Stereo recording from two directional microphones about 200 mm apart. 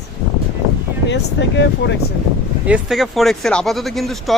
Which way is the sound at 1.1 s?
60° left (ahead or behind).